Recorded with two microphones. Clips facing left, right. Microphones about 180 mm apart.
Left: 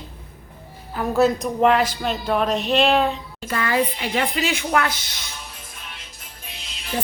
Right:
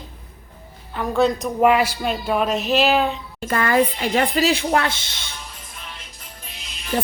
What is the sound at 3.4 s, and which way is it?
Speech, 50° right (ahead or behind).